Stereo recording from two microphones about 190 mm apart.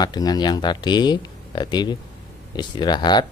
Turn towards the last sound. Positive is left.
turn(degrees=25)  # may be behind; listen again after turning